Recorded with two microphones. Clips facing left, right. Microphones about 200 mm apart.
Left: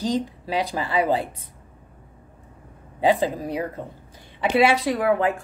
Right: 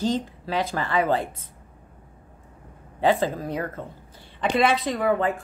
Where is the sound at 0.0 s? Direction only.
15° left (ahead or behind).